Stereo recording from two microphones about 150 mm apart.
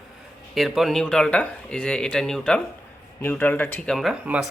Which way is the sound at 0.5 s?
Centre (ahead or behind).